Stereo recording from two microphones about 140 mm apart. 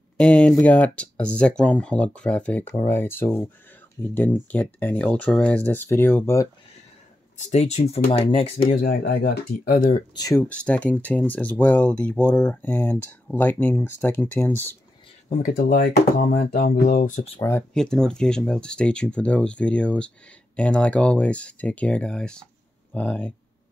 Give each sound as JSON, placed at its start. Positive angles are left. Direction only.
{"t": 0.2, "sound": "speech", "side_deg": 10}
{"t": 2.6, "sound": "speech", "side_deg": 20}
{"t": 7.3, "sound": "speech", "side_deg": 55}
{"t": 8.7, "sound": "speech", "side_deg": 90}
{"t": 10.5, "sound": "speech", "side_deg": 10}
{"t": 15.2, "sound": "speech", "side_deg": 65}
{"t": 17.4, "sound": "speech", "side_deg": 20}
{"t": 17.7, "sound": "speech", "side_deg": 5}